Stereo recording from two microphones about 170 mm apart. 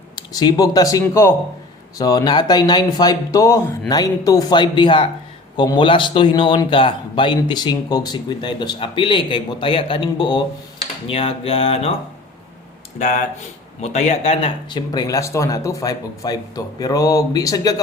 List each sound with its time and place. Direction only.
0.2 s a man's voice: 25° left (ahead or behind)
13.8 s a man's voice: 40° left (ahead or behind); by 17.7 s 20° left (ahead or behind)